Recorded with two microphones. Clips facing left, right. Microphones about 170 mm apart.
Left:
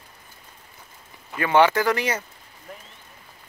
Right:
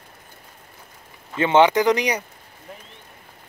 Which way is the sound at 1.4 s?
20° right (ahead or behind).